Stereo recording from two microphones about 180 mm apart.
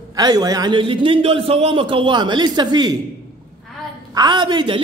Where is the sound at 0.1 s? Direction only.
20° right (ahead or behind).